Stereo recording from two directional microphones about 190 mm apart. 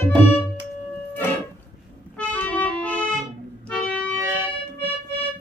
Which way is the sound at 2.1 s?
5° left (ahead or behind).